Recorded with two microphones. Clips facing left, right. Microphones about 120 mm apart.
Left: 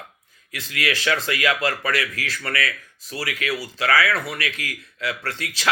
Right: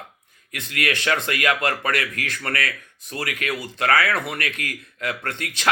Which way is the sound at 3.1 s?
50° right (ahead or behind).